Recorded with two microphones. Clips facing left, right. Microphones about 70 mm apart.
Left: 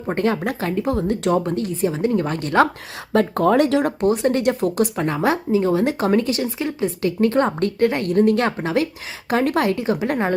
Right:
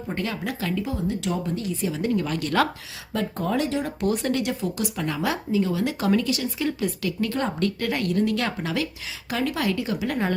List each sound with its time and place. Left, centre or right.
0.1 s speech: left
3.1 s speech: left
4.0 s speech: left